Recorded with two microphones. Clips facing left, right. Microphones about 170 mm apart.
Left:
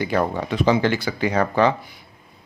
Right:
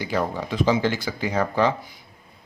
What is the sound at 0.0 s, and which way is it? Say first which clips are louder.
Speech: left 4 dB; 60° left (ahead or behind).